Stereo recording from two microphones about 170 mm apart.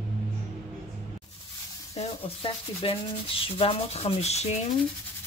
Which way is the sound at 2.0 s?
35° left (ahead or behind).